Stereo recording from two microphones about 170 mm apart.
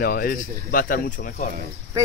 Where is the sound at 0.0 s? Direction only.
60° left (ahead or behind).